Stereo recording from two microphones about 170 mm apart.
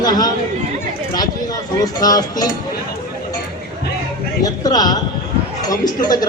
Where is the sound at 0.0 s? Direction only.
25° left (ahead or behind).